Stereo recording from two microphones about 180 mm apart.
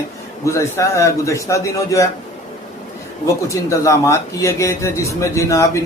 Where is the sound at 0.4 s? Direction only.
15° left (ahead or behind).